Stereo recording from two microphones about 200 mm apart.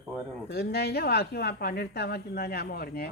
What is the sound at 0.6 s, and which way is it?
Speech, 55° left (ahead or behind).